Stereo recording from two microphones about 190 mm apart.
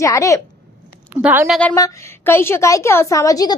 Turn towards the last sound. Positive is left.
turn(degrees=20)  # may be behind; listen again after turning